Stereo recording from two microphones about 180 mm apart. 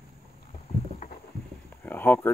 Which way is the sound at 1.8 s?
10° left (ahead or behind).